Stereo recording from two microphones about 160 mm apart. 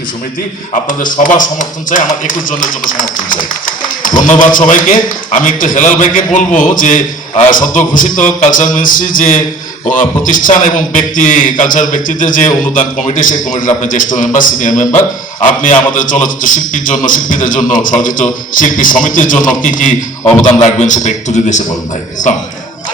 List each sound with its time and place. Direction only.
1.1 s a man's voice: 55° left (ahead or behind)
13.6 s a man's voice: 55° left (ahead or behind)